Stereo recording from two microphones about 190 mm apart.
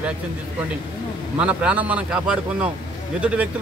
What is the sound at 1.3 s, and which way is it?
Speech, 5° right (ahead or behind).